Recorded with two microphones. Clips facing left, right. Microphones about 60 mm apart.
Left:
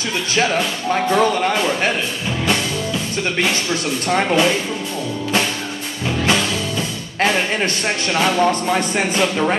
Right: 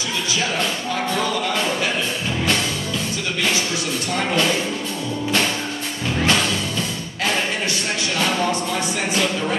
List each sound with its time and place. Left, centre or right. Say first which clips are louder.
0.9 s speech: left 8 dB; left
1.5 s speech: left 3 dB; centre
4.3 s speech: left 3 dB; centre
8.4 s speech: left 5 dB; left